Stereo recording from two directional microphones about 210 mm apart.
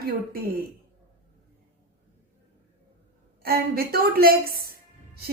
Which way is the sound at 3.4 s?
45° right (ahead or behind).